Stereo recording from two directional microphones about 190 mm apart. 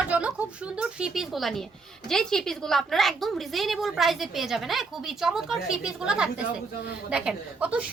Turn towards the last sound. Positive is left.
turn(degrees=-5)  # may be behind; listen again after turning